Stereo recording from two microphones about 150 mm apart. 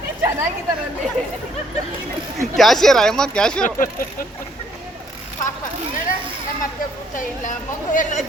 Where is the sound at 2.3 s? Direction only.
Centre (ahead or behind).